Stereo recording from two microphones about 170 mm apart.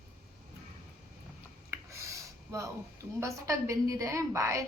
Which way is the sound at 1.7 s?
15° right (ahead or behind).